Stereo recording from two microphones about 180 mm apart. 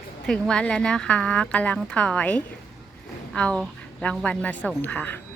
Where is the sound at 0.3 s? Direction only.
5° left (ahead or behind).